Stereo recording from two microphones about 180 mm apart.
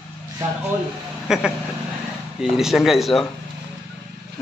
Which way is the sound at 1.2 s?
5° right (ahead or behind).